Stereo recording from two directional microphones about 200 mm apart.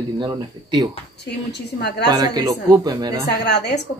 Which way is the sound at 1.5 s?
55° left (ahead or behind).